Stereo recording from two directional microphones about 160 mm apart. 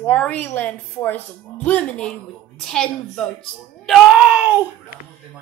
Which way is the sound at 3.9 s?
5° right (ahead or behind).